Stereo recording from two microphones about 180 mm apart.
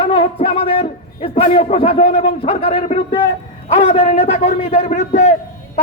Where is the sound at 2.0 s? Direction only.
45° left (ahead or behind).